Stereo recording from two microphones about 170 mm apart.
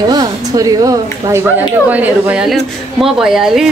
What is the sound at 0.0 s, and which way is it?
Speech, 25° right (ahead or behind).